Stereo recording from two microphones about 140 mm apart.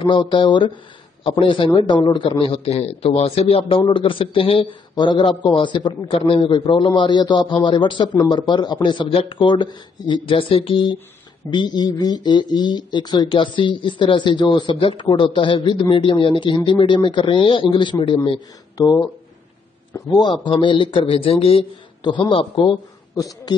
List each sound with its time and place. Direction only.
0.0 s speech: 35° left (ahead or behind)
20.2 s speech: 35° left (ahead or behind)
23.1 s speech: 25° left (ahead or behind)